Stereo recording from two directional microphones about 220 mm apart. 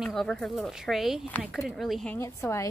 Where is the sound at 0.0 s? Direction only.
Centre (ahead or behind).